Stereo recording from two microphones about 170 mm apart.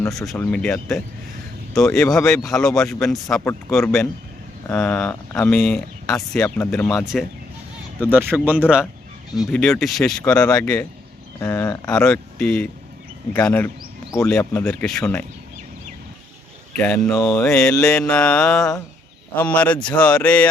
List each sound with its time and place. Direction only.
0.1 s speech: centre (ahead or behind)
7.0 s speech: 5° right (ahead or behind)
9.5 s speech: 5° left (ahead or behind)
11.9 s speech: 5° left (ahead or behind)
14.3 s speech: 5° left (ahead or behind)
16.7 s speech: 10° left (ahead or behind)
17.3 s speech: 5° left (ahead or behind)